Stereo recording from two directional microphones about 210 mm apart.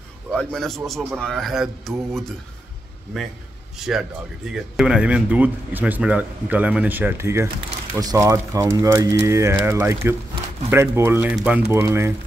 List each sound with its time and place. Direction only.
0.3 s a man's voice: 5° left (ahead or behind)
3.7 s speech: centre (ahead or behind)